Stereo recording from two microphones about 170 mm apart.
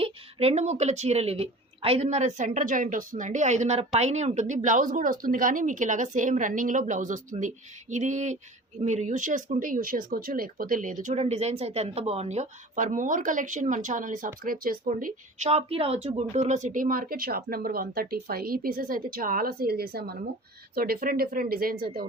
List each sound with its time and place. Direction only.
0.0 s a woman's voice: 35° right (ahead or behind)
15.5 s speech: 35° right (ahead or behind); by 22.0 s 60° right (ahead or behind)